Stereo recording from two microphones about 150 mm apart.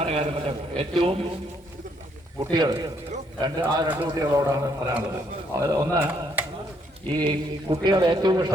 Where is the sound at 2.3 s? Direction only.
30° right (ahead or behind).